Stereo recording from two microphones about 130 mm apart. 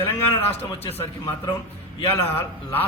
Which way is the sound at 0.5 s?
50° left (ahead or behind).